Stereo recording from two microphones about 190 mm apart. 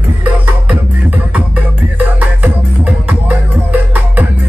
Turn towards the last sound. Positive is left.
turn(degrees=-10)  # may be behind; listen again after turning